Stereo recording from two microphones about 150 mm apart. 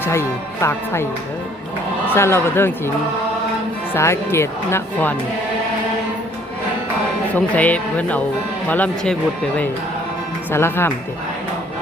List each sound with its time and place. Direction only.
0.0 s speech: 15° left (ahead or behind)
2.0 s speech: 15° left (ahead or behind)
3.9 s speech: 15° left (ahead or behind)
7.3 s speech: 10° left (ahead or behind)
10.5 s speech: 15° left (ahead or behind)